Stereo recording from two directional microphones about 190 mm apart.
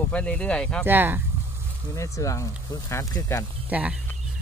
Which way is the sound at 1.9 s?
15° left (ahead or behind).